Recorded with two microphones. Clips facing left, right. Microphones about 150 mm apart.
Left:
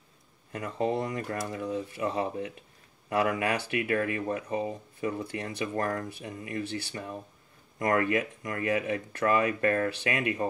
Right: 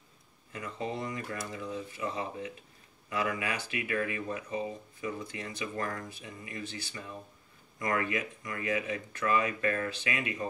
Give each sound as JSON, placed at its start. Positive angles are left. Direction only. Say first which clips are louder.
{"t": 0.5, "sound": "speech", "louder": "left 7 dB", "side_deg": 60}
{"t": 3.8, "sound": "speech", "louder": "left 1 dB", "side_deg": 50}